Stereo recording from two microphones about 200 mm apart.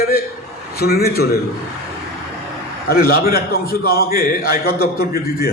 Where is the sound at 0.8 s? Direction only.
50° left (ahead or behind).